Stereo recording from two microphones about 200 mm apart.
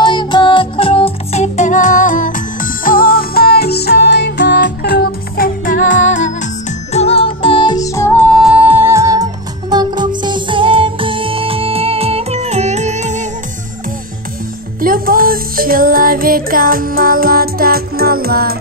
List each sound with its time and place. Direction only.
0.0 s music: 20° left (ahead or behind)
8.4 s music: 5° right (ahead or behind); by 13.3 s 35° right (ahead or behind)
14.8 s music: 45° right (ahead or behind)